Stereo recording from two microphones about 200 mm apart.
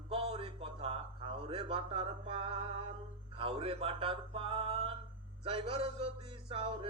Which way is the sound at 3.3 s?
25° right (ahead or behind).